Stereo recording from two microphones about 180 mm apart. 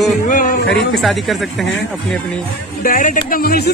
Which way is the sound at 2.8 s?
50° left (ahead or behind).